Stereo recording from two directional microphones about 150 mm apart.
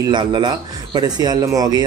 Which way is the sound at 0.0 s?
30° right (ahead or behind).